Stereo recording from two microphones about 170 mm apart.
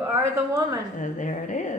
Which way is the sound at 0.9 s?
45° left (ahead or behind).